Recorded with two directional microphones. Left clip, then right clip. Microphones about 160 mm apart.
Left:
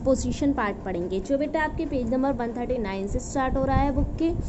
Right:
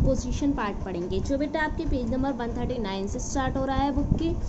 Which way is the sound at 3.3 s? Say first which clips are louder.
Left 3 dB; 15° left (ahead or behind).